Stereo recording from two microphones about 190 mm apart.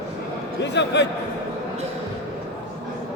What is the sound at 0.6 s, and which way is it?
Speech, 65° left (ahead or behind).